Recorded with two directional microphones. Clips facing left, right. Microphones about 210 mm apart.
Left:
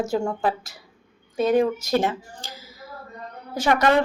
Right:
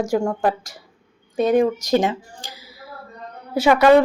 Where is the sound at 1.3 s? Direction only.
45° right (ahead or behind).